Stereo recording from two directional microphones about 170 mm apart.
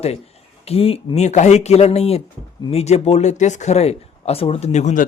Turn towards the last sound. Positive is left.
turn(degrees=50)  # may be behind; listen again after turning